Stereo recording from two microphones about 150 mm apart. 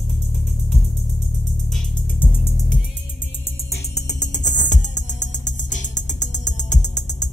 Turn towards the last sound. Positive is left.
turn(degrees=50)  # may be behind; listen again after turning